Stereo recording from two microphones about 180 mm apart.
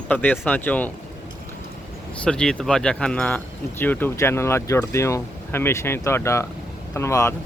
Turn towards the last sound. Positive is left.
turn(degrees=15)  # may be behind; listen again after turning